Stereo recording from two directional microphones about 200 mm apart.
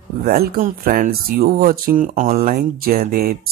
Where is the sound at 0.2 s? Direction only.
50° right (ahead or behind).